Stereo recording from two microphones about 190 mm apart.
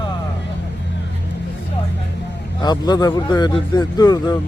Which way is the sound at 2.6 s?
20° left (ahead or behind).